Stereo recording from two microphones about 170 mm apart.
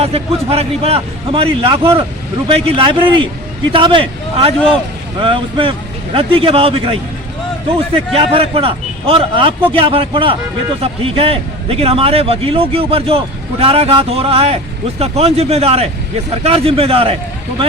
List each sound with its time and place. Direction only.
0.0 s a man's voice: 35° right (ahead or behind)
8.1 s a man's voice: 35° right (ahead or behind)